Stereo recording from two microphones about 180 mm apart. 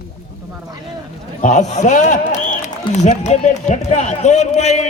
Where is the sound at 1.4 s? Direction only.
40° left (ahead or behind).